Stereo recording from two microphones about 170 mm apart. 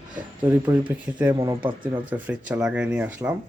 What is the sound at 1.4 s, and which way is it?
Speech, 25° right (ahead or behind).